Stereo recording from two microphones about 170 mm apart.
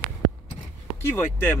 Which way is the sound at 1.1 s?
10° left (ahead or behind).